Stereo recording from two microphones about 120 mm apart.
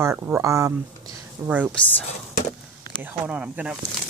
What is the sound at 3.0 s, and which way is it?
Speech, 10° right (ahead or behind).